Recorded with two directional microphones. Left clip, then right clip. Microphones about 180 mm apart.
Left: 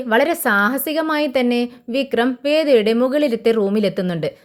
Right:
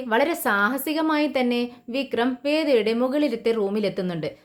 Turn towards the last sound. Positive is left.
turn(degrees=35)  # may be behind; listen again after turning